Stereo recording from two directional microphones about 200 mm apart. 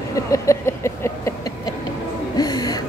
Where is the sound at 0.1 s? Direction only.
15° left (ahead or behind).